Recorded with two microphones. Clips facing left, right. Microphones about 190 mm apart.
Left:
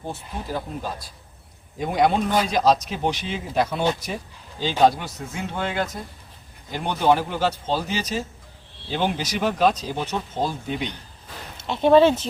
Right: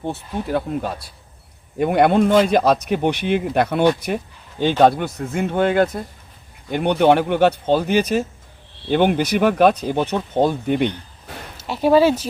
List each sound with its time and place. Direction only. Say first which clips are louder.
0.1 s speech: right 7 dB; 65° right (ahead or behind)
11.7 s speech: right 1 dB; 5° right (ahead or behind)